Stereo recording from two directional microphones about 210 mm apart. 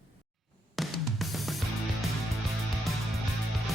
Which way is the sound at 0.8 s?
Centre (ahead or behind).